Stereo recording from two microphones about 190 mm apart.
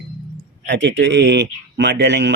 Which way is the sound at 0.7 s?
65° right (ahead or behind).